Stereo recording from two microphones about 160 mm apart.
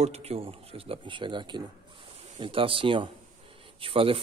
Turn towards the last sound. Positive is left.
turn(degrees=-35)  # may be behind; listen again after turning